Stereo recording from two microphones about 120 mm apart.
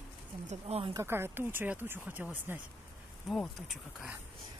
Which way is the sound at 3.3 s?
Centre (ahead or behind).